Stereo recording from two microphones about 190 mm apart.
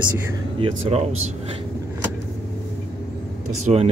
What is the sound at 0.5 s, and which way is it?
Speech, 35° right (ahead or behind).